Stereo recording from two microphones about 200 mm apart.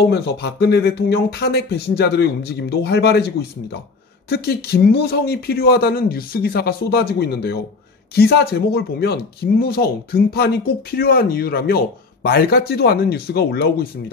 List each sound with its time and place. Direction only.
0.0 s speech: 55° left (ahead or behind)